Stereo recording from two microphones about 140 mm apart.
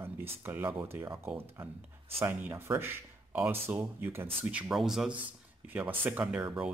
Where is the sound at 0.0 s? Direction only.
15° right (ahead or behind).